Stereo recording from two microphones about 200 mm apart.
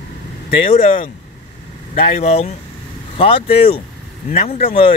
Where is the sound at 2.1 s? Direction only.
35° left (ahead or behind).